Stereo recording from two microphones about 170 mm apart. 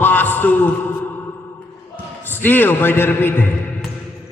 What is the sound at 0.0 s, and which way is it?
Speech, 10° left (ahead or behind).